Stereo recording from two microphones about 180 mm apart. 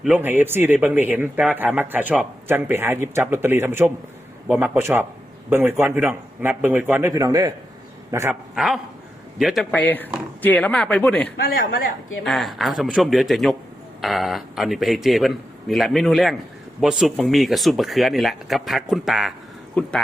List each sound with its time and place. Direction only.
0.0 s speech: 10° right (ahead or behind)
8.5 s speech: centre (ahead or behind)
11.3 s speech: 55° left (ahead or behind)
12.2 s speech: centre (ahead or behind)